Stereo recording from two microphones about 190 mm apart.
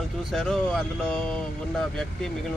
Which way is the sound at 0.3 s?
Centre (ahead or behind).